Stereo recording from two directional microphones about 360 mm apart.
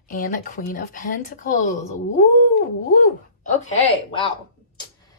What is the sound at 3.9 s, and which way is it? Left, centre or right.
Speech, centre.